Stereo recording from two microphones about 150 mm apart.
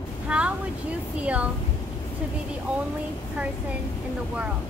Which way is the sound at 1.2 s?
10° right (ahead or behind).